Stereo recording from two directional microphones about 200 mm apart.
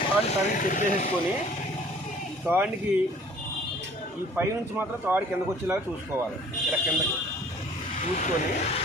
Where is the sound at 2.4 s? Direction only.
10° right (ahead or behind).